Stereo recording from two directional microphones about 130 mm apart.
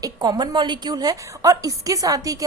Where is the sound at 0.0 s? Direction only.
30° right (ahead or behind).